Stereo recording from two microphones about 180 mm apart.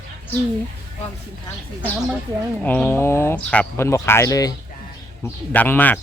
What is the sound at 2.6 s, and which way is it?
Speech, 10° left (ahead or behind).